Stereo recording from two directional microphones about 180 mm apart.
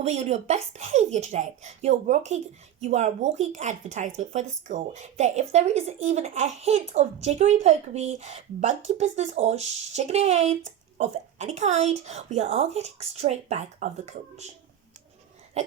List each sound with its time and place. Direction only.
0.0 s a woman's voice: 35° right (ahead or behind)
15.6 s a woman's voice: 40° right (ahead or behind)